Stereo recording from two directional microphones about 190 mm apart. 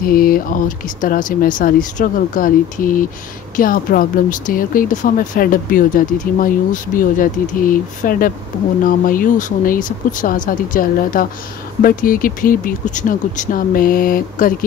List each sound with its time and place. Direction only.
0.0 s speech: 50° left (ahead or behind)